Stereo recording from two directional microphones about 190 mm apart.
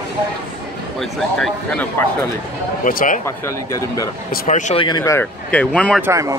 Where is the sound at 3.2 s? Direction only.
15° left (ahead or behind).